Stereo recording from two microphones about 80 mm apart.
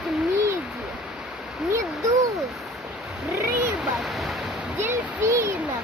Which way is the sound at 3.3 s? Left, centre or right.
Right.